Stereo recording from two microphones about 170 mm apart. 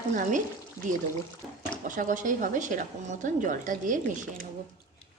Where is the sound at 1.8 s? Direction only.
50° right (ahead or behind).